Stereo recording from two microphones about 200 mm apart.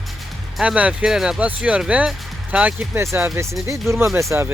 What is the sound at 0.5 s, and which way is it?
Speech, 5° right (ahead or behind).